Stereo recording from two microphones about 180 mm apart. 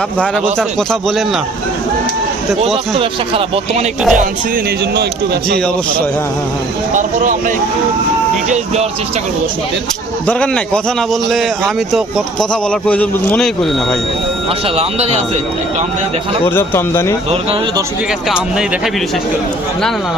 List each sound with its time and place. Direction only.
0.8 s a man's voice: 5° left (ahead or behind)
3.0 s speech: 30° right (ahead or behind)
4.1 s speech: 45° right (ahead or behind)
6.9 s speech: 45° right (ahead or behind)
10.2 s a man's voice: 5° left (ahead or behind)
14.8 s speech: 35° right (ahead or behind)
16.6 s speech: 15° left (ahead or behind)
18.3 s a man's voice: 5° right (ahead or behind)